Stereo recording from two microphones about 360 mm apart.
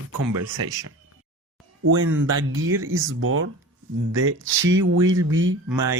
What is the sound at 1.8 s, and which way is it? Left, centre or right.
A woman's voice, right.